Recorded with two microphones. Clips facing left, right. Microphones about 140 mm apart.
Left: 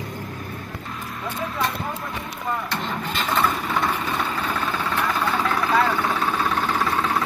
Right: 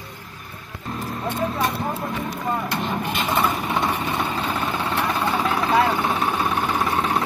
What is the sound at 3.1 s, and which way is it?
Vehicle, 15° right (ahead or behind).